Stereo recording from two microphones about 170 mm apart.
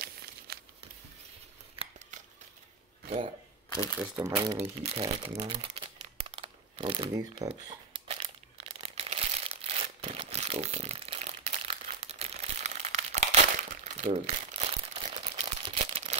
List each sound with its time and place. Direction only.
0.5 s crumpling: 65° right (ahead or behind)
1.8 s scissors: 35° right (ahead or behind)
4.1 s speech: 20° right (ahead or behind)
4.6 s speech: 35° right (ahead or behind)
6.3 s a sound: 35° right (ahead or behind)
8.1 s crumpling: 35° right (ahead or behind)
15.1 s a sound: 35° right (ahead or behind)